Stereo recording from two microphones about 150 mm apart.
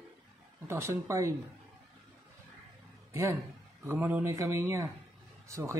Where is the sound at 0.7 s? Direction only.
15° right (ahead or behind).